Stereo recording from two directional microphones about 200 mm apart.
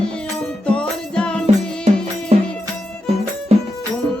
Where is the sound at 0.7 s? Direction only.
5° left (ahead or behind).